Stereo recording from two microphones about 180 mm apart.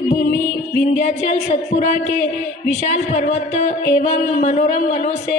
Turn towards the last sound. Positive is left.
turn(degrees=40)  # may be behind; listen again after turning